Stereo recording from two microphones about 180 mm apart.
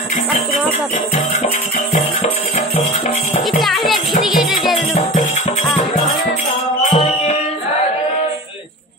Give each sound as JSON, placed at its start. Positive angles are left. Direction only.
{"t": 3.6, "sound": "music", "side_deg": 0}
{"t": 6.9, "sound": "music", "side_deg": 30}